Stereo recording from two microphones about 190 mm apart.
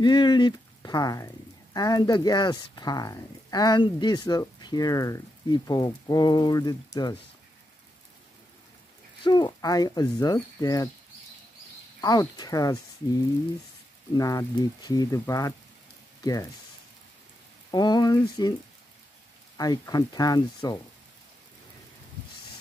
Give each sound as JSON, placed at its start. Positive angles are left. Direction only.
{"t": 0.0, "sound": "speech", "side_deg": 25}
{"t": 9.2, "sound": "speech", "side_deg": 20}
{"t": 12.0, "sound": "speech", "side_deg": 20}
{"t": 14.1, "sound": "speech", "side_deg": 20}
{"t": 17.6, "sound": "speech", "side_deg": 20}
{"t": 19.5, "sound": "speech", "side_deg": 20}